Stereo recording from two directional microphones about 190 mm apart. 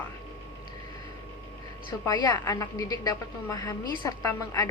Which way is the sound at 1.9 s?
20° left (ahead or behind).